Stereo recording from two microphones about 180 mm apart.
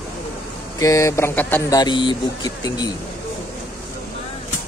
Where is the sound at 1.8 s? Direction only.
25° left (ahead or behind).